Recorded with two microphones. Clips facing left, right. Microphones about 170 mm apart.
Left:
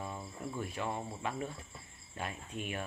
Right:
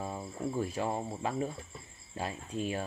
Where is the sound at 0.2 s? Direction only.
35° right (ahead or behind).